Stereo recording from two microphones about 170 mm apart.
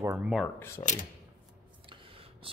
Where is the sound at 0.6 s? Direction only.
15° left (ahead or behind).